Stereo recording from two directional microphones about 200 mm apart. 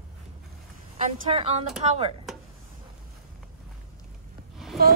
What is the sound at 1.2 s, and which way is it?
Speech, 30° right (ahead or behind).